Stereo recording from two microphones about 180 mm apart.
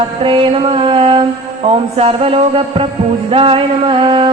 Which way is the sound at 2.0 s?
30° right (ahead or behind).